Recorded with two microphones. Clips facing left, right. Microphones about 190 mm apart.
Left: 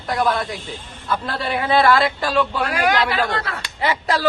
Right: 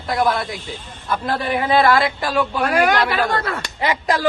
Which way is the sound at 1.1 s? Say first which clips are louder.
Right 2 dB; 15° right (ahead or behind).